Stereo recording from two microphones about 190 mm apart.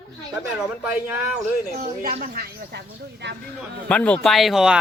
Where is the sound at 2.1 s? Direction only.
45° right (ahead or behind).